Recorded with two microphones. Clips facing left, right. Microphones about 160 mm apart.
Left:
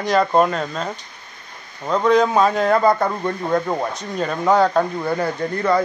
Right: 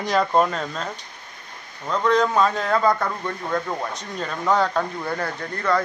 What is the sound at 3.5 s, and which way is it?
Speech, 30° left (ahead or behind).